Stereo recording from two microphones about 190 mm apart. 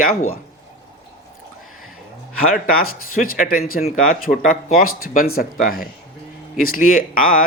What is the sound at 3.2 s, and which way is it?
Speech, 50° left (ahead or behind).